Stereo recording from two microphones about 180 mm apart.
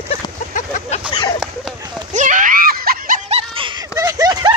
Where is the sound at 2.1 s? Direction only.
45° right (ahead or behind); by 3.9 s 25° right (ahead or behind).